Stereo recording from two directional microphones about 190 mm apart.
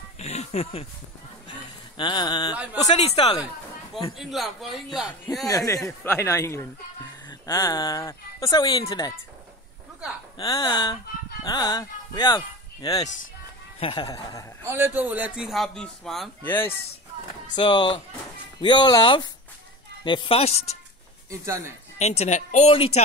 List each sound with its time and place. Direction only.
0.2 s speech: 35° left (ahead or behind)
1.5 s a sound: 25° left (ahead or behind)
2.5 s speech: 5° right (ahead or behind)
2.9 s speech: 30° left (ahead or behind)
4.2 s a man's voice: centre (ahead or behind)
5.5 s speech: 20° left (ahead or behind)
10.3 s speech: 20° left (ahead or behind)
14.6 s a man's voice: 10° right (ahead or behind); by 16.7 s 10° left (ahead or behind)
17.6 s speech: 25° left (ahead or behind)
21.3 s speech: 15° right (ahead or behind)
21.9 s speech: 35° left (ahead or behind)